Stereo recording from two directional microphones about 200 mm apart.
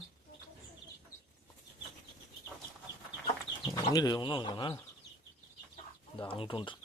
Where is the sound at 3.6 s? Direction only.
20° left (ahead or behind).